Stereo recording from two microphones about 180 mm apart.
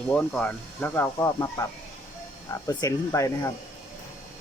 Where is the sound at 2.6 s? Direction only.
15° left (ahead or behind).